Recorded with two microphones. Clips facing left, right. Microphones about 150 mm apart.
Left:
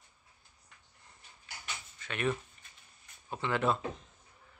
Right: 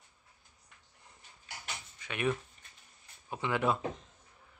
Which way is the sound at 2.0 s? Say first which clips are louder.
Even; 10° right (ahead or behind).